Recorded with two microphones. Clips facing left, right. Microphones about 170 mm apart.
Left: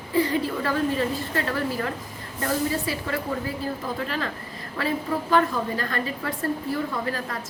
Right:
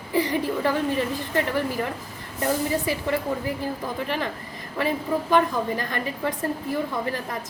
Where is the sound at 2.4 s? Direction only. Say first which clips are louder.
Right 1 dB; 15° right (ahead or behind).